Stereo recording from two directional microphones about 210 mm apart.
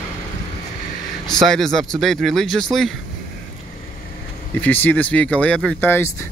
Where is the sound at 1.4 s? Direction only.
Centre (ahead or behind).